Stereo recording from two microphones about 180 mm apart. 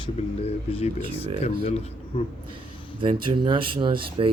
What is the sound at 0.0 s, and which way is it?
Speech, 30° left (ahead or behind).